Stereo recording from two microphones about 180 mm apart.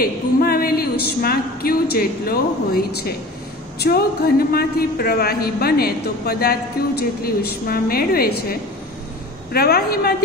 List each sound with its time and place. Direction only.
0.0 s a man's voice: 55° left (ahead or behind)